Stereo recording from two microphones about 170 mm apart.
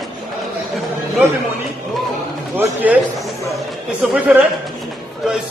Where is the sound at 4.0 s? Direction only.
5° right (ahead or behind).